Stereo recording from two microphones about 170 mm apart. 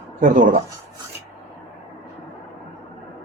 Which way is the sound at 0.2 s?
55° right (ahead or behind).